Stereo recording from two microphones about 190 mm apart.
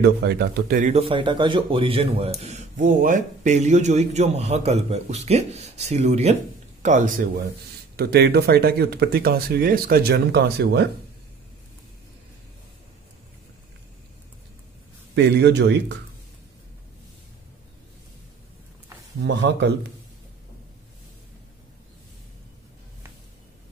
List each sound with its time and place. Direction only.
0.0 s speech: 60° right (ahead or behind)
0.9 s speech: 30° right (ahead or behind)
7.9 s speech: 55° right (ahead or behind)
15.1 s speech: 60° right (ahead or behind)
19.2 s speech: 70° right (ahead or behind)